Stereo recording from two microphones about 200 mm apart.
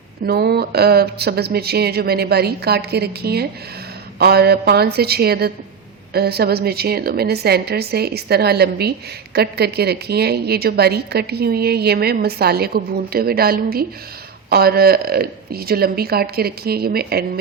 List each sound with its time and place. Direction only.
0.3 s a woman's voice: 50° right (ahead or behind)